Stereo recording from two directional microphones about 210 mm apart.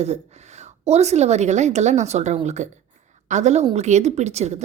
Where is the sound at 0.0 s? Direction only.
30° right (ahead or behind).